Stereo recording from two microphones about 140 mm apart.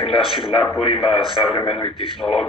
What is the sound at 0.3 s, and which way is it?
A man's voice, 40° left (ahead or behind).